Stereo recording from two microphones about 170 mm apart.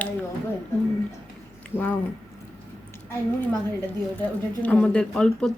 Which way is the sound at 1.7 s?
10° left (ahead or behind).